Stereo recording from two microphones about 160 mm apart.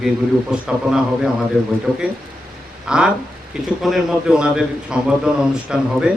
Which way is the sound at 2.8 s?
5° right (ahead or behind).